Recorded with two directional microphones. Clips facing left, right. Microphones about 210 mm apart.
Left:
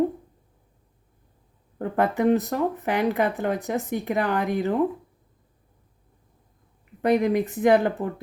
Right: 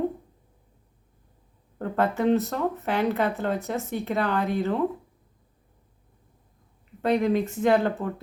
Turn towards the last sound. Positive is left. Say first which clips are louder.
# left 2 dB
turn(degrees=15)  # may be behind; listen again after turning